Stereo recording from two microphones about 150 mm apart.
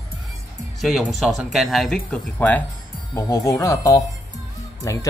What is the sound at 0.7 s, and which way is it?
Speech, centre (ahead or behind).